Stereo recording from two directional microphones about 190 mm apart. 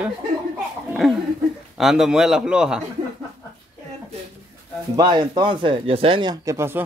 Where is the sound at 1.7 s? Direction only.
Centre (ahead or behind).